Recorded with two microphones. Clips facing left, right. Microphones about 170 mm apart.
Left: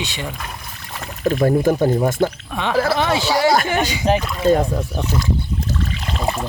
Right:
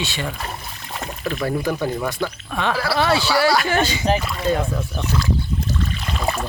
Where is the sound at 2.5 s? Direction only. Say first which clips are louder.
Left 2 dB; 15° left (ahead or behind).